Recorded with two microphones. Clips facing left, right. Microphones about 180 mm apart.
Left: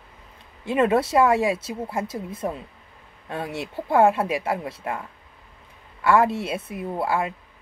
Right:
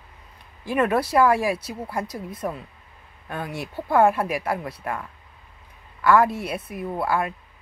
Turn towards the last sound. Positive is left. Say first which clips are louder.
# even
turn(degrees=25)  # may be behind; listen again after turning